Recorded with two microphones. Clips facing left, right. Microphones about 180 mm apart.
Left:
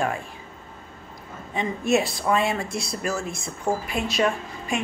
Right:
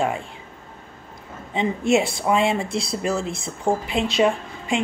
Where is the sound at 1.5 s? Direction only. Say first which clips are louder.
Right 3 dB; 25° right (ahead or behind).